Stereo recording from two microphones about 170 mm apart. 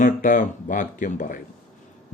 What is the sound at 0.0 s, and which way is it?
A man's voice, 50° left (ahead or behind).